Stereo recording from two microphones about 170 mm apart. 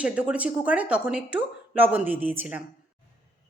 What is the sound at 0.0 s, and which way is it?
Speech, 5° right (ahead or behind).